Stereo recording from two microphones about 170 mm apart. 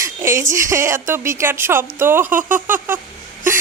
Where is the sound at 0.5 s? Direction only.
20° right (ahead or behind).